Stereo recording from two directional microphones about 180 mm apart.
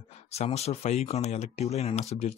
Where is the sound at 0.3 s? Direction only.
35° left (ahead or behind).